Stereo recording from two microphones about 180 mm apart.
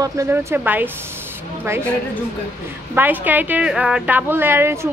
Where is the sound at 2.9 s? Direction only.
10° right (ahead or behind).